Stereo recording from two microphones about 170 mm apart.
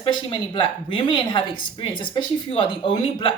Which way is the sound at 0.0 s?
30° left (ahead or behind).